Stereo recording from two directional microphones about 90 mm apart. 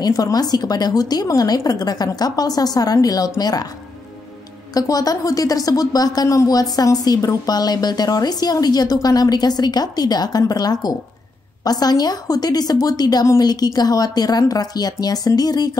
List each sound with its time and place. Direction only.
0.0 s a woman's voice: 45° left (ahead or behind)
4.7 s a woman's voice: 45° left (ahead or behind)